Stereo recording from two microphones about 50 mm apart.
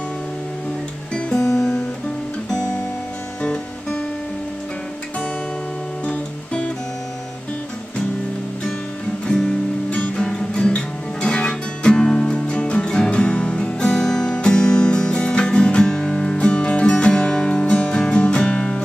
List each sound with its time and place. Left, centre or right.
1.1 s guitar: centre
6.0 s guitar: left
9.3 s guitar: centre
9.8 s music: left